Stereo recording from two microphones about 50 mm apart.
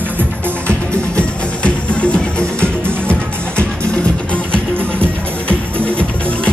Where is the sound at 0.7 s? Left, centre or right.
Left.